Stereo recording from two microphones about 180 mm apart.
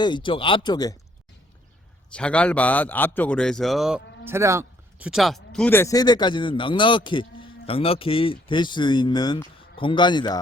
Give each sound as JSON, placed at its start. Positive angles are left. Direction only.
{"t": 0.0, "sound": "speech", "side_deg": 25}
{"t": 2.1, "sound": "a man's voice", "side_deg": 5}
{"t": 4.3, "sound": "speech", "side_deg": -15}